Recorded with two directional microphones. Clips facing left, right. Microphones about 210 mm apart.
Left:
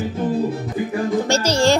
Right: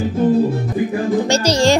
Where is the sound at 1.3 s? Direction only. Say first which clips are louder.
Right 2 dB; 15° right (ahead or behind).